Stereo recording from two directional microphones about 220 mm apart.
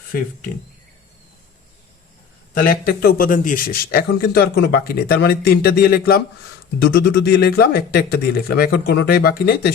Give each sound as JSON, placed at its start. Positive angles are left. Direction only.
{"t": 2.6, "sound": "speech", "side_deg": 40}